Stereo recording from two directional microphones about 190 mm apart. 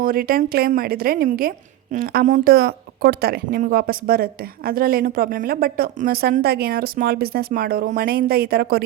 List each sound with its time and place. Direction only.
0.0 s speech: 50° right (ahead or behind)